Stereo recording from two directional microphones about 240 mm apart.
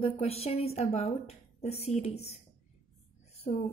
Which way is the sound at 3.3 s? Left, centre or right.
Left.